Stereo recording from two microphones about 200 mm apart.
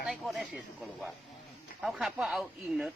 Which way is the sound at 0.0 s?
Centre (ahead or behind).